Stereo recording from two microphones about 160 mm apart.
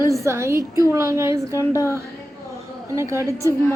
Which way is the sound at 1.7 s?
20° left (ahead or behind).